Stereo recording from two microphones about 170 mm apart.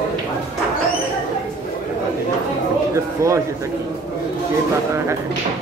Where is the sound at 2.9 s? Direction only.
20° right (ahead or behind).